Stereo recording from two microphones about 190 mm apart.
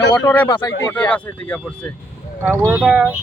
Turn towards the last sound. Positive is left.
turn(degrees=-5)  # may be behind; listen again after turning